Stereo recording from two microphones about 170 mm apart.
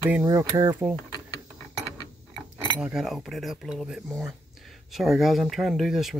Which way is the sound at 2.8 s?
5° right (ahead or behind).